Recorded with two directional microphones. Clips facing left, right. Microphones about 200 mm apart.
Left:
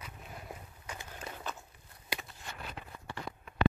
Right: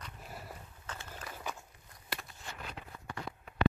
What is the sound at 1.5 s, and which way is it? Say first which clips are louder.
Walk: right 1 dB; 15° right (ahead or behind).